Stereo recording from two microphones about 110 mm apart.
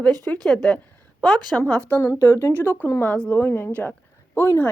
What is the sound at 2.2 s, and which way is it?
A woman's voice, 25° left (ahead or behind).